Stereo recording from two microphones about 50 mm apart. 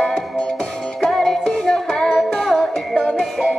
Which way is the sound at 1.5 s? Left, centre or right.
Centre.